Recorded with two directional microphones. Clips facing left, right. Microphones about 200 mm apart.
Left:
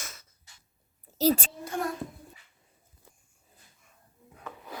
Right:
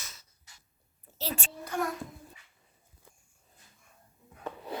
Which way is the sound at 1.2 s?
40° left (ahead or behind).